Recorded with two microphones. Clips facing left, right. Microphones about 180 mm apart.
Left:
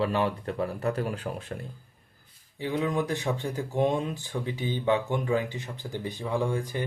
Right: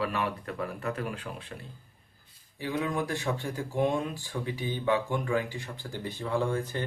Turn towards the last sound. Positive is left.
turn(degrees=15)  # may be behind; listen again after turning